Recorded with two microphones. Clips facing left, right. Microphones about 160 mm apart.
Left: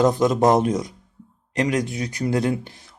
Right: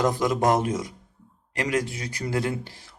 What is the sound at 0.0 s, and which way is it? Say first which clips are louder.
Speech: left 5 dB; 20° left (ahead or behind).